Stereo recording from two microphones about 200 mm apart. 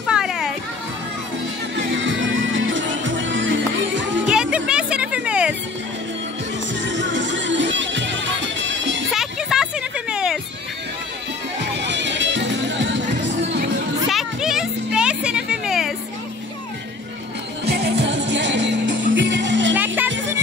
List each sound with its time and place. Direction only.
0.0 s music: 5° right (ahead or behind)
1.8 s music: 70° right (ahead or behind)
4.3 s music: 5° right (ahead or behind)
6.7 s music: 65° right (ahead or behind)
9.1 s music: centre (ahead or behind)
11.7 s music: 60° right (ahead or behind)
14.0 s music: centre (ahead or behind)
17.6 s music: 55° right (ahead or behind)